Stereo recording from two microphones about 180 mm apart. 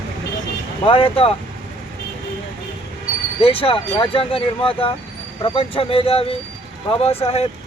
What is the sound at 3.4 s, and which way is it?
Speech, 30° left (ahead or behind).